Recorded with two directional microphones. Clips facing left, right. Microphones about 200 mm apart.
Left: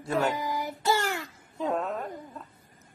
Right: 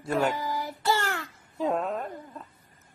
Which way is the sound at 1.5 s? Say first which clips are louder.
Right 2 dB; centre (ahead or behind).